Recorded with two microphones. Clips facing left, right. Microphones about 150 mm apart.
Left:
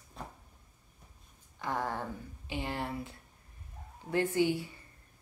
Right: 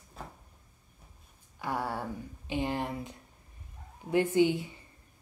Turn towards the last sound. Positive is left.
turn(degrees=-20)  # may be behind; listen again after turning